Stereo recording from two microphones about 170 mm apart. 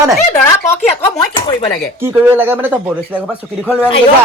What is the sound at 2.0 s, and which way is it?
Speech, 10° right (ahead or behind).